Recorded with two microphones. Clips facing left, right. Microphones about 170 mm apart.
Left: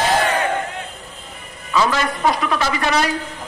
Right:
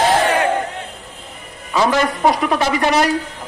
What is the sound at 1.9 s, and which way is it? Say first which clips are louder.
Speech: right 4 dB; 20° right (ahead or behind).